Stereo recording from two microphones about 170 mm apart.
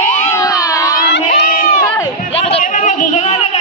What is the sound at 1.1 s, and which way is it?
Crowd, 75° left (ahead or behind).